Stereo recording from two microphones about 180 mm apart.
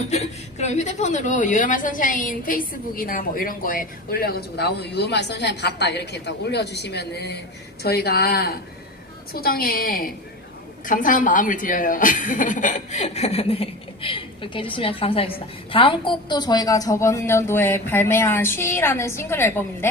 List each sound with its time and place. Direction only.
0.0 s a woman's voice: 40° left (ahead or behind); by 19.9 s 15° left (ahead or behind)